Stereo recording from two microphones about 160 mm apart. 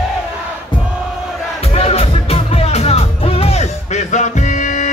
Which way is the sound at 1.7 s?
40° left (ahead or behind).